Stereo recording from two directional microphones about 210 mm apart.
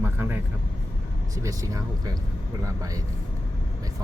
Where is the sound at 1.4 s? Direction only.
15° right (ahead or behind).